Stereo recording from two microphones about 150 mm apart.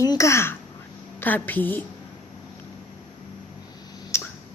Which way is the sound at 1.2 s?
10° left (ahead or behind).